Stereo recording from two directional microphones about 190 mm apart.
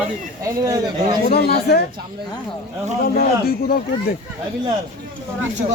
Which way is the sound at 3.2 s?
55° left (ahead or behind).